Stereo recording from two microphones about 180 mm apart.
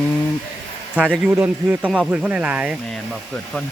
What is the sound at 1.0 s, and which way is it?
Speech, 5° right (ahead or behind).